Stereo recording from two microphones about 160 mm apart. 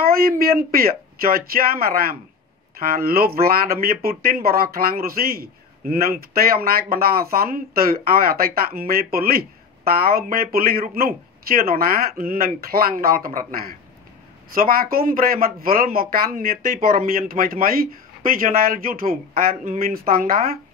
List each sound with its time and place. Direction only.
0.0 s speech: 70° right (ahead or behind)